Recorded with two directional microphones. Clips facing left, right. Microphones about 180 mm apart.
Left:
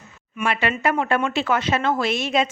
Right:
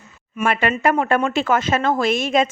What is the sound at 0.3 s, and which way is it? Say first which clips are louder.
Speech: right 3 dB; 50° right (ahead or behind).